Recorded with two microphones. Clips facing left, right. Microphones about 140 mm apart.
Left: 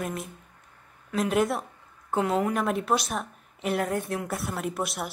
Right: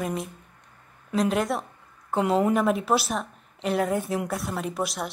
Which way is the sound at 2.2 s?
25° right (ahead or behind).